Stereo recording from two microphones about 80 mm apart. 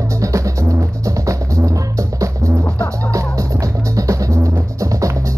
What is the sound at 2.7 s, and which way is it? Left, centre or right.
Music, right.